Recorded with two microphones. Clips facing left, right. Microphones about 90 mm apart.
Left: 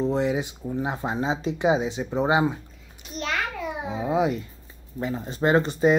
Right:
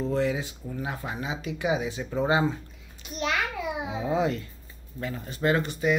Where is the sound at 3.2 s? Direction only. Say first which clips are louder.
Right 1 dB; 5° right (ahead or behind).